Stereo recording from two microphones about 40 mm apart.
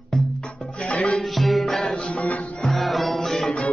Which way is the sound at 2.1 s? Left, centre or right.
Left.